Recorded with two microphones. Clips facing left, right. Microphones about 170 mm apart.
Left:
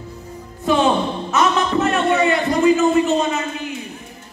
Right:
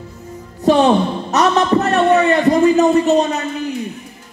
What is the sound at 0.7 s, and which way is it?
A man's voice, 40° right (ahead or behind).